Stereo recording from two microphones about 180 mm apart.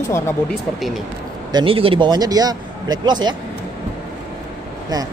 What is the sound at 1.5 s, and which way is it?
A man's voice, 30° right (ahead or behind).